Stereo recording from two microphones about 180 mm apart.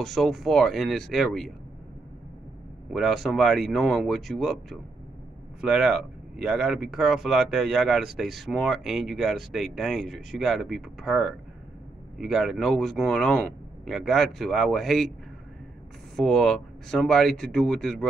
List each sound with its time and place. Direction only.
0.0 s speech: centre (ahead or behind)
2.9 s speech: centre (ahead or behind)
16.2 s speech: 5° left (ahead or behind)